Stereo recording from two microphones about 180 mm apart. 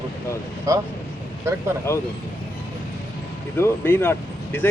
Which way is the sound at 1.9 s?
15° left (ahead or behind).